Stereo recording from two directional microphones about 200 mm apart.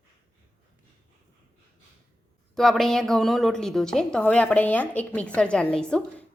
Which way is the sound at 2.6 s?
Centre (ahead or behind).